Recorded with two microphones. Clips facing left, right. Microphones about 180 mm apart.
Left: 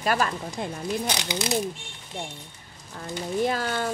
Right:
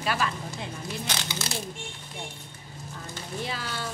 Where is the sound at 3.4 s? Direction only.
50° left (ahead or behind).